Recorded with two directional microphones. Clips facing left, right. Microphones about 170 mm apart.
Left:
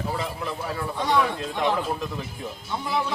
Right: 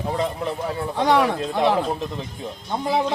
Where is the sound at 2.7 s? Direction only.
50° right (ahead or behind).